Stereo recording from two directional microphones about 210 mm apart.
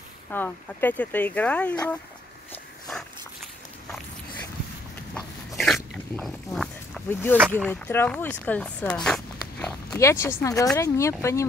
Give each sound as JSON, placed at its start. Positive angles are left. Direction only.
{"t": 0.3, "sound": "speech", "side_deg": 10}
{"t": 5.6, "sound": "dog", "side_deg": 0}
{"t": 7.5, "sound": "speech", "side_deg": 10}
{"t": 9.9, "sound": "speech", "side_deg": 15}